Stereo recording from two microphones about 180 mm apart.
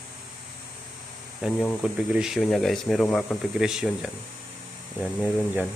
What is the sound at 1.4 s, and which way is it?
Speech, centre (ahead or behind).